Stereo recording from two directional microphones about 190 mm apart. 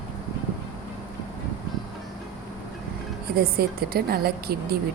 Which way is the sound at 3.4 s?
55° right (ahead or behind).